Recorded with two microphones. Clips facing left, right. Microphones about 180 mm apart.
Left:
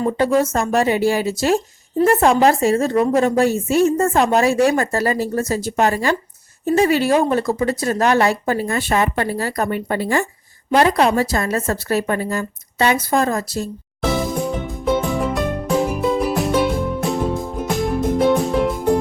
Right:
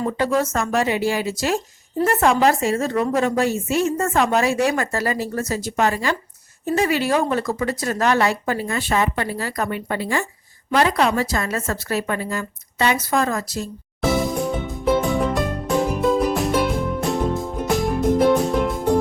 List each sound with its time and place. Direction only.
0.0 s a woman's voice: 25° left (ahead or behind)
8.0 s speech: 40° left (ahead or behind)
10.8 s a woman's voice: 40° left (ahead or behind)
13.6 s music: centre (ahead or behind)